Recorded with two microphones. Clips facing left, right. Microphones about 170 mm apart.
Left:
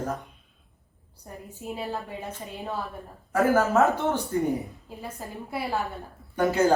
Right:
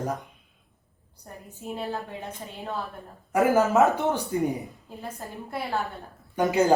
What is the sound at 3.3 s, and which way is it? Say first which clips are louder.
Speech: right 1 dB; 15° right (ahead or behind).